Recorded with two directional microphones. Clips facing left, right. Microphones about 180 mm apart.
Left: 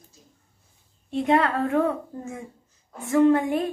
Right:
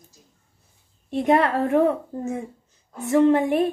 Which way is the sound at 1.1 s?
20° right (ahead or behind).